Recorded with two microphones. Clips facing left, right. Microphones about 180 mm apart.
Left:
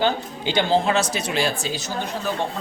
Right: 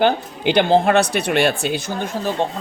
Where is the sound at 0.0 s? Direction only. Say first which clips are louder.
Right 5 dB; 60° right (ahead or behind).